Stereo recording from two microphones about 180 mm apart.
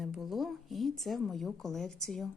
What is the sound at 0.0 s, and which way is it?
Speech, centre (ahead or behind).